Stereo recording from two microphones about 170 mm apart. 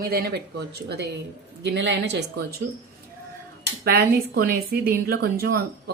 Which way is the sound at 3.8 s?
65° right (ahead or behind).